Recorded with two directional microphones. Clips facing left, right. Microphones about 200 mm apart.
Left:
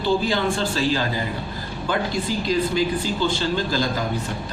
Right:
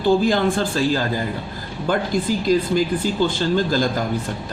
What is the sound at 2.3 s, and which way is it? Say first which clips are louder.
A man's voice: right 4 dB; 45° right (ahead or behind).